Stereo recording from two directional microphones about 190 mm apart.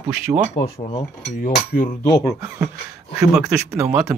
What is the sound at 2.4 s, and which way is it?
Speech, 15° right (ahead or behind).